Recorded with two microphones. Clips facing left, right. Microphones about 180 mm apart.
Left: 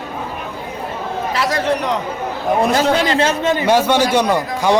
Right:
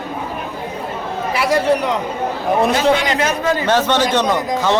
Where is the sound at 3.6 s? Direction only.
10° left (ahead or behind).